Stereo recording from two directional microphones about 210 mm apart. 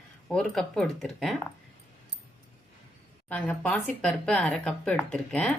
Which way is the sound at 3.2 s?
5° left (ahead or behind).